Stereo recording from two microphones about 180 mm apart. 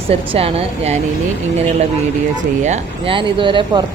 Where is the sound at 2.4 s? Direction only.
40° right (ahead or behind).